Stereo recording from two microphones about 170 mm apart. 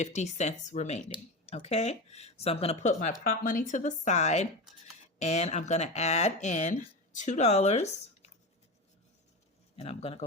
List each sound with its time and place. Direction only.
0.0 s speech: 45° left (ahead or behind)
9.7 s speech: 40° left (ahead or behind)